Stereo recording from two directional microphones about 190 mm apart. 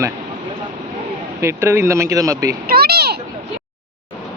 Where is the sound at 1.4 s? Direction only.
15° right (ahead or behind).